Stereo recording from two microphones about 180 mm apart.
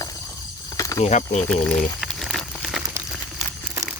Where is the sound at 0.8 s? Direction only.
20° left (ahead or behind).